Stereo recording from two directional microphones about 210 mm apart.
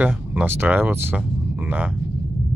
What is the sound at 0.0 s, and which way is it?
Speech, 5° right (ahead or behind).